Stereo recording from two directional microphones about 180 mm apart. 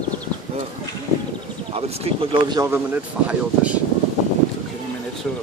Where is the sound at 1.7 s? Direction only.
35° right (ahead or behind).